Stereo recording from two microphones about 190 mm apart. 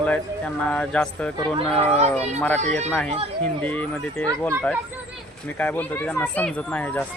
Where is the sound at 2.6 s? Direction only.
40° right (ahead or behind).